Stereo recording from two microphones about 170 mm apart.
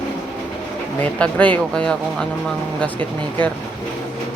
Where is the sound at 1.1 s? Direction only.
5° left (ahead or behind).